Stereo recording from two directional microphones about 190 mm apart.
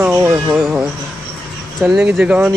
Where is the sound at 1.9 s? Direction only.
5° right (ahead or behind).